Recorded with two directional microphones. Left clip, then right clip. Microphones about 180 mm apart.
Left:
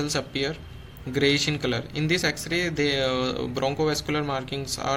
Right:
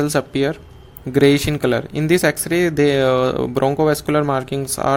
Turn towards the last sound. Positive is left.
turn(degrees=-50)  # may be behind; listen again after turning